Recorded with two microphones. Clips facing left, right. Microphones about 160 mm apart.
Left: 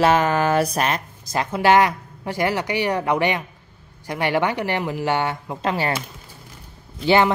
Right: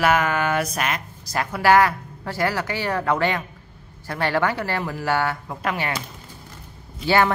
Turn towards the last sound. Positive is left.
turn(degrees=20)  # may be behind; listen again after turning